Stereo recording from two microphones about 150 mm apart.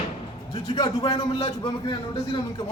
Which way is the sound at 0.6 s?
35° left (ahead or behind).